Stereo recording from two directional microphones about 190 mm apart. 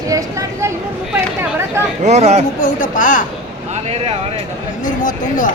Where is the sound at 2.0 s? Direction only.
35° right (ahead or behind).